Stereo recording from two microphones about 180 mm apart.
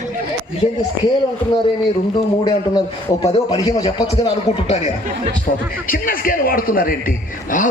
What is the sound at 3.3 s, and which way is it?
A man's voice, 35° left (ahead or behind).